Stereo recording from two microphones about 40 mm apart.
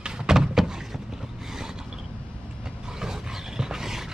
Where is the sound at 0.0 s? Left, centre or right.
Centre.